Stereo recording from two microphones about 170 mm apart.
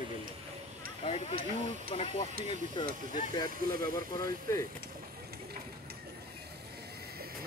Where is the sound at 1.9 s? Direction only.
35° left (ahead or behind).